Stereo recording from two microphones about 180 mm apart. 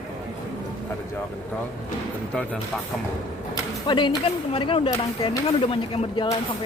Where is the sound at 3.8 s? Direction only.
25° left (ahead or behind).